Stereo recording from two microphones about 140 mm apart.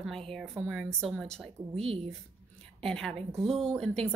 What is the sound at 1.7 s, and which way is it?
Speech, 45° right (ahead or behind).